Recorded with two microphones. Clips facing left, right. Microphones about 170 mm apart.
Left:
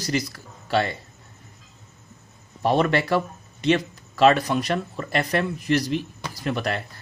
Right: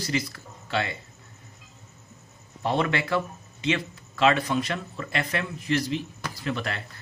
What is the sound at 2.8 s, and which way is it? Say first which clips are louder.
Speech: left 4 dB; 40° left (ahead or behind).